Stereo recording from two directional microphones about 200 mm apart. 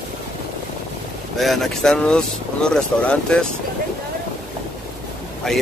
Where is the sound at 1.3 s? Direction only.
Centre (ahead or behind).